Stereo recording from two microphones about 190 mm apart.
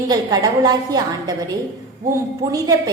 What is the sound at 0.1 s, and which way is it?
A woman's voice, 20° right (ahead or behind).